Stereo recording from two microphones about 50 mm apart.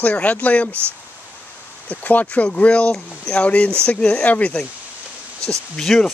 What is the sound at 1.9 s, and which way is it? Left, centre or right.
Speech, left.